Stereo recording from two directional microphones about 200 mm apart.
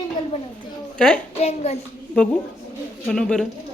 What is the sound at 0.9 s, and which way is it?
Speech, 5° left (ahead or behind).